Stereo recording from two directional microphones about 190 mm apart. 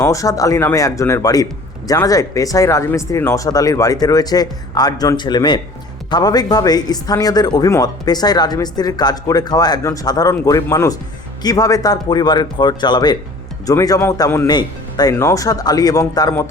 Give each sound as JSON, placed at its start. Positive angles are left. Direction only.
{"t": 0.0, "sound": "speech", "side_deg": 15}